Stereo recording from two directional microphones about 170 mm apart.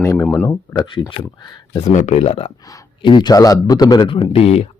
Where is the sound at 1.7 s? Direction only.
40° left (ahead or behind).